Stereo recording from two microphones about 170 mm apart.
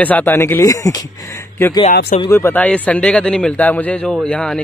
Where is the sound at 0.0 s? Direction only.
10° left (ahead or behind).